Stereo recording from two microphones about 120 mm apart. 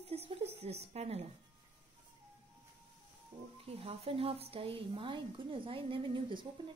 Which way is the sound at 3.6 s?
55° right (ahead or behind).